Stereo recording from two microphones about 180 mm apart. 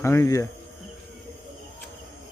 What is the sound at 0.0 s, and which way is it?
Speech, 15° left (ahead or behind).